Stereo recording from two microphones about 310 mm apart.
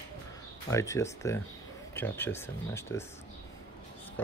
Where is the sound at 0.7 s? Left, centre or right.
Centre.